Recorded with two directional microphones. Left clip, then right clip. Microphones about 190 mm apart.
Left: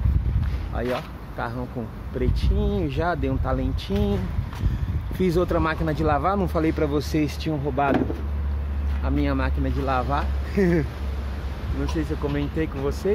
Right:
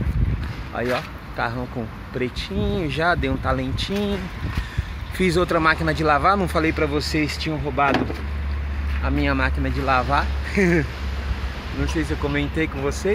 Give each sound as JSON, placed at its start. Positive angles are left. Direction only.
{"t": 0.8, "sound": "speech", "side_deg": -20}
{"t": 2.1, "sound": "speech", "side_deg": 0}
{"t": 9.0, "sound": "speech", "side_deg": -10}